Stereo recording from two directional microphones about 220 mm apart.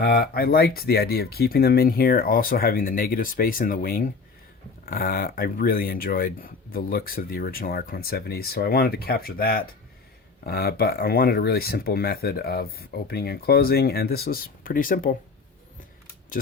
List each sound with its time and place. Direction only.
0.0 s speech: 45° left (ahead or behind)